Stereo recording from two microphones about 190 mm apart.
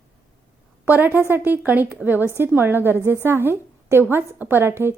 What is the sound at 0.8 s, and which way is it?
A woman's voice, 10° right (ahead or behind).